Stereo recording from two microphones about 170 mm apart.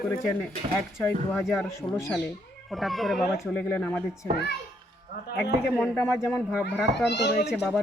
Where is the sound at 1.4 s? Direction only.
Centre (ahead or behind).